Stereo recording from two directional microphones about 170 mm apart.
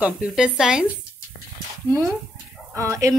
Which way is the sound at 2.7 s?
20° right (ahead or behind).